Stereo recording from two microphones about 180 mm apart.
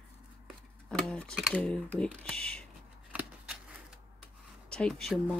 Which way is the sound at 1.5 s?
5° left (ahead or behind).